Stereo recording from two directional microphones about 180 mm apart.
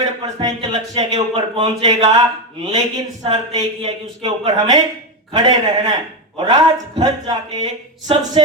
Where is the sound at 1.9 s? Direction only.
40° right (ahead or behind).